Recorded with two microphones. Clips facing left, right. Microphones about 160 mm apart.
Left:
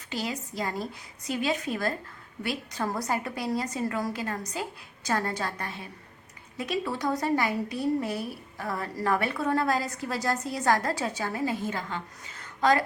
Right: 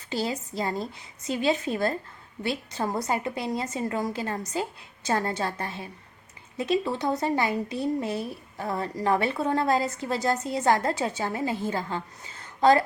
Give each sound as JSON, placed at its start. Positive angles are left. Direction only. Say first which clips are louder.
{"t": 0.1, "sound": "a woman's voice", "louder": "right 4 dB", "side_deg": -30}